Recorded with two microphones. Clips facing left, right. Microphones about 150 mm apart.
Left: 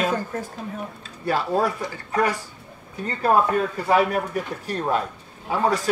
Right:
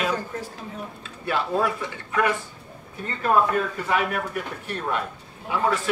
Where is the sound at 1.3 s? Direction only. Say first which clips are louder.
Left 2 dB; 40° left (ahead or behind).